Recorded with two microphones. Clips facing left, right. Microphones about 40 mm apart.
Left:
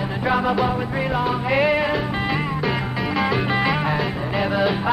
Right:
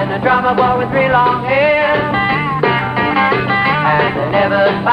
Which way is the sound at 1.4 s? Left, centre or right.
Right.